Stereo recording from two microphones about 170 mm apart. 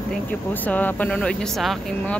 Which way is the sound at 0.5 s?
10° left (ahead or behind).